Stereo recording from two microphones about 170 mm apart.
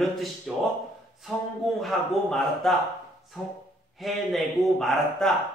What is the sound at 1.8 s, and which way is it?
A man's voice, centre (ahead or behind).